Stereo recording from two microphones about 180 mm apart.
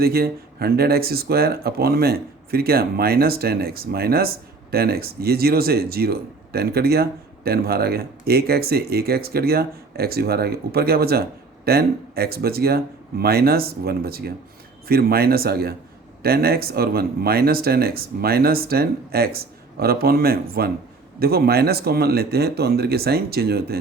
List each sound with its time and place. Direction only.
0.0 s speech: 60° right (ahead or behind)